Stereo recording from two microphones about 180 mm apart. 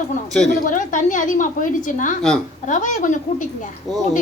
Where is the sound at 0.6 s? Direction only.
45° left (ahead or behind).